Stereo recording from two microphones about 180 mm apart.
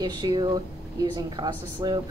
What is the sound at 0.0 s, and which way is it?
Speech, 25° right (ahead or behind).